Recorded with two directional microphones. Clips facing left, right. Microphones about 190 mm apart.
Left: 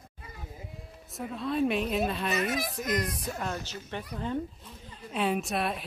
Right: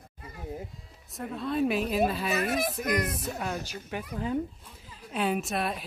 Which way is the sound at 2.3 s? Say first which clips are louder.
Right 2 dB; 55° right (ahead or behind).